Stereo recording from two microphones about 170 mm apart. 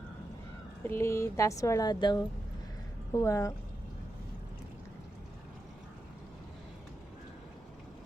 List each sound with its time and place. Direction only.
0.9 s speech: 15° left (ahead or behind)